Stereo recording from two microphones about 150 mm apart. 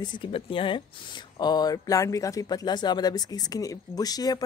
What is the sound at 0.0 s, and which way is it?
Speech, 35° left (ahead or behind).